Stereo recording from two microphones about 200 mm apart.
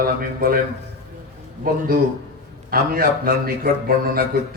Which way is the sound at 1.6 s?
45° right (ahead or behind).